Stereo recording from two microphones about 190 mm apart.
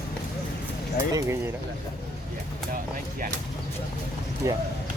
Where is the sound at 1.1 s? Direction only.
20° right (ahead or behind).